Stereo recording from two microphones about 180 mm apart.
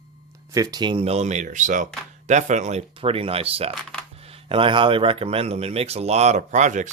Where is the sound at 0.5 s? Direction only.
20° right (ahead or behind).